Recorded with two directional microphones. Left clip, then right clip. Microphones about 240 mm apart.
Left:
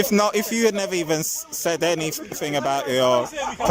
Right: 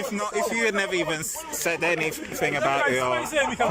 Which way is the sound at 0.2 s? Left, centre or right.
Left.